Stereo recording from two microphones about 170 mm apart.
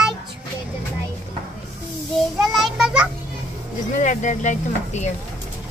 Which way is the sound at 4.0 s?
45° left (ahead or behind).